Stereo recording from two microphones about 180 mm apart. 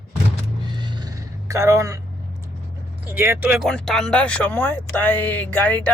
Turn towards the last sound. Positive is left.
turn(degrees=10)  # may be behind; listen again after turning